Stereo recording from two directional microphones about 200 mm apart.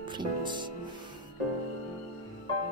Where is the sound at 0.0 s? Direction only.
25° right (ahead or behind).